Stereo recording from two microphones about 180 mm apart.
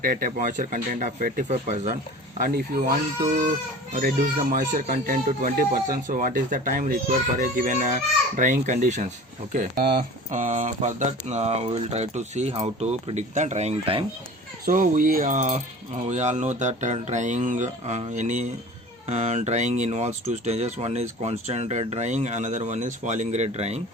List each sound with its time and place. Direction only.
0.0 s speech: 50° right (ahead or behind)
2.4 s speech: 55° right (ahead or behind)
3.9 s speech: 50° right (ahead or behind)
9.5 s speech: 55° right (ahead or behind); by 14.0 s 35° right (ahead or behind)
14.6 s speech: 50° right (ahead or behind)